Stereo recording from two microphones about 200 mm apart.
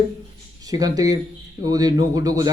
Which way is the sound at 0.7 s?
20° right (ahead or behind).